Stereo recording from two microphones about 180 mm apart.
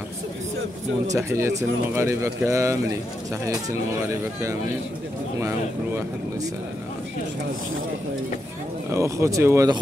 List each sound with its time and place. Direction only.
1.1 s speech: 15° right (ahead or behind)
5.4 s speech: 15° right (ahead or behind)
8.9 s speech: 15° right (ahead or behind)